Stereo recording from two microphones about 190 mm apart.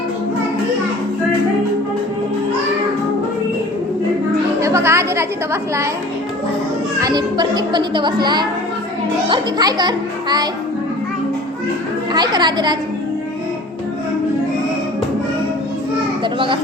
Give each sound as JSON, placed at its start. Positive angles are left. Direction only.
{"t": 4.6, "sound": "a woman's voice", "side_deg": -15}
{"t": 7.0, "sound": "a child's voice", "side_deg": -20}
{"t": 12.1, "sound": "a child's voice", "side_deg": -20}
{"t": 16.2, "sound": "children playing", "side_deg": -25}